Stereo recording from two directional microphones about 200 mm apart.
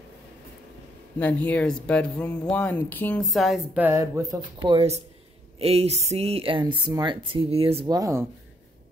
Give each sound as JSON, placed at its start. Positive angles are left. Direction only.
{"t": 1.2, "sound": "speech", "side_deg": 5}